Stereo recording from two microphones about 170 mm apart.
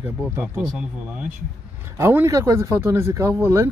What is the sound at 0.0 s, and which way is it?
Speech, 10° right (ahead or behind).